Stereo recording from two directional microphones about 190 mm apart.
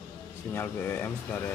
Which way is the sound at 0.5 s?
10° left (ahead or behind).